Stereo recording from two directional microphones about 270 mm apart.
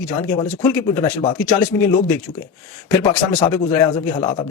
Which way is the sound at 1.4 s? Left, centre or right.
Centre.